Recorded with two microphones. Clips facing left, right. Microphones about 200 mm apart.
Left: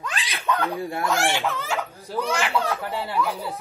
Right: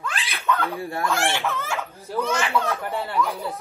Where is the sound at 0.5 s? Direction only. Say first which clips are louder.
Even; 15° left (ahead or behind).